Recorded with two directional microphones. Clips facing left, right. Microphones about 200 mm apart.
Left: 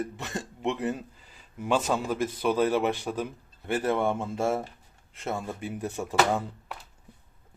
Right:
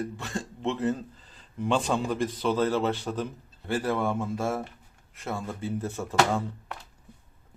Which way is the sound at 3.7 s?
20° left (ahead or behind).